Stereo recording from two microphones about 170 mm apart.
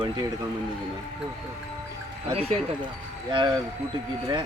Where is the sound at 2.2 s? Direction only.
35° right (ahead or behind).